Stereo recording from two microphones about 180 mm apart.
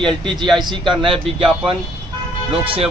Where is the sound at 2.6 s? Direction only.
30° right (ahead or behind).